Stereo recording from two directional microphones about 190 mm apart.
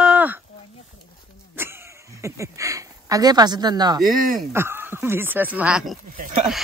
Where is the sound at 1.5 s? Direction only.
10° right (ahead or behind).